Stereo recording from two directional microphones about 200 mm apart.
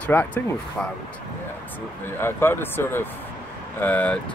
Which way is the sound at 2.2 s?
10° left (ahead or behind).